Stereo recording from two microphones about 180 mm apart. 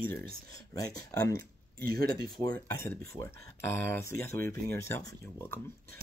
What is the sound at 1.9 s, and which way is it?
Speech, 55° right (ahead or behind).